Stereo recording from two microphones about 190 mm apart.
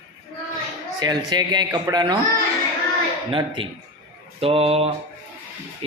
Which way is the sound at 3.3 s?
25° right (ahead or behind).